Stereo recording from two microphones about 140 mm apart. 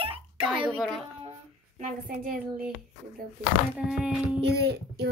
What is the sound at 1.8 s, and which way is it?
Speech, 75° right (ahead or behind).